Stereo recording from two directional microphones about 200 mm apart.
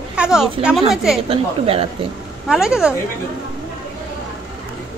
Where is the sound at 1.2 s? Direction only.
30° right (ahead or behind).